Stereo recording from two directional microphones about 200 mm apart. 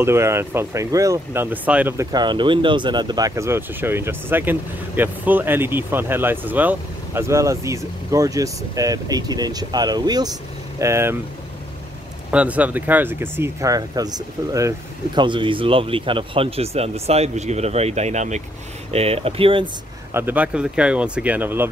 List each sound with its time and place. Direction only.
0.0 s speech: 15° right (ahead or behind)
12.3 s speech: 5° right (ahead or behind); by 19.7 s 25° right (ahead or behind)
20.1 s speech: 10° right (ahead or behind)